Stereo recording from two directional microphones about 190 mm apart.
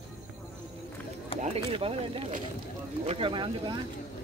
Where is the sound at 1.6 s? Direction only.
30° right (ahead or behind).